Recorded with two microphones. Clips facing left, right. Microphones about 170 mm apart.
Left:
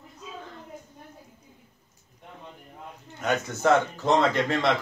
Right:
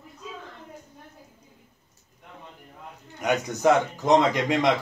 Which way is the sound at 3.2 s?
15° right (ahead or behind).